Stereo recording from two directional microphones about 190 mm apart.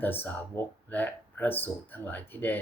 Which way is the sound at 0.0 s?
10° left (ahead or behind).